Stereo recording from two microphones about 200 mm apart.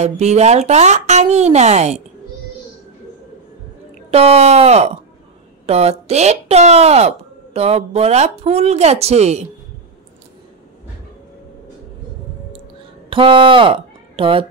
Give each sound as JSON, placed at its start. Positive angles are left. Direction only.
{"t": 0.0, "sound": "speech", "side_deg": -35}
{"t": 4.1, "sound": "speech", "side_deg": -30}
{"t": 13.1, "sound": "speech", "side_deg": -25}